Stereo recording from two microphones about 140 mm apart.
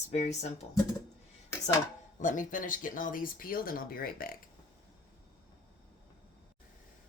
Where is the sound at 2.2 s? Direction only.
70° left (ahead or behind); by 4.4 s 90° left.